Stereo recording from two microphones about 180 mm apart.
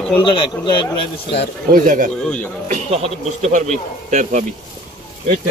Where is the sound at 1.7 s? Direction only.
45° right (ahead or behind).